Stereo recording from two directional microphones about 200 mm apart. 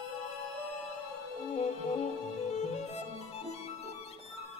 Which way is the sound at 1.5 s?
35° left (ahead or behind).